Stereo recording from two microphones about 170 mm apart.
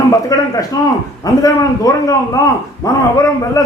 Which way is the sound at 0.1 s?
20° left (ahead or behind).